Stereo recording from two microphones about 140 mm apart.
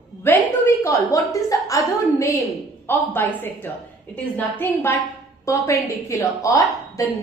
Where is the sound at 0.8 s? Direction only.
25° left (ahead or behind).